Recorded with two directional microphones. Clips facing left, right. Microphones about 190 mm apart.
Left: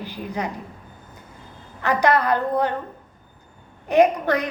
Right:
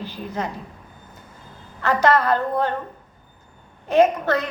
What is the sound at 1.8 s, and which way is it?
Speech, 15° left (ahead or behind).